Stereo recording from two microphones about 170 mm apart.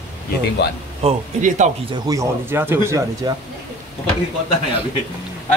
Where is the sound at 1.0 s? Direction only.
45° right (ahead or behind).